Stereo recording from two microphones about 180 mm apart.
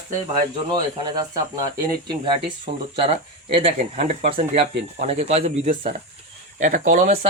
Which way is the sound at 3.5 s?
40° right (ahead or behind).